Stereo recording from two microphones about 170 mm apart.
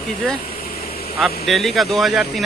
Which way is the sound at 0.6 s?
60° left (ahead or behind).